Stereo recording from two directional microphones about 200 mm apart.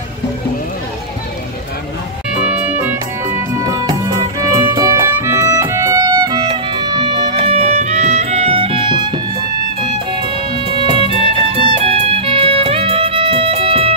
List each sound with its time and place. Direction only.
2.4 s music: 5° right (ahead or behind); by 13.9 s 30° right (ahead or behind)